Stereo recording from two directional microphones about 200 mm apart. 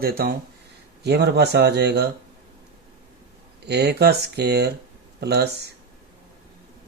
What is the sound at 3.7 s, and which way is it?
Speech, 55° right (ahead or behind).